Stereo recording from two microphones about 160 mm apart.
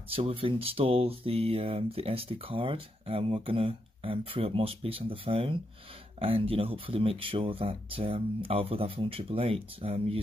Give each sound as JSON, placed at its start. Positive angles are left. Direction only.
{"t": 0.1, "sound": "speech", "side_deg": -35}